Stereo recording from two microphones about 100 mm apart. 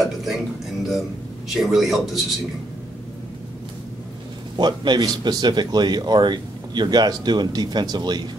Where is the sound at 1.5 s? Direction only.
5° right (ahead or behind).